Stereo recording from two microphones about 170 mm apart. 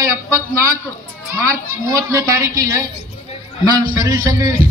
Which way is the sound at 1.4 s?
20° right (ahead or behind).